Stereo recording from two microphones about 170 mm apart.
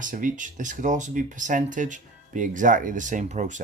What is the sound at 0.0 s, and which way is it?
Speech, 50° right (ahead or behind).